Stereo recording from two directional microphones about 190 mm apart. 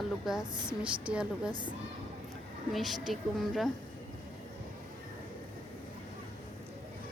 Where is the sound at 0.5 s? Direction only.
25° right (ahead or behind).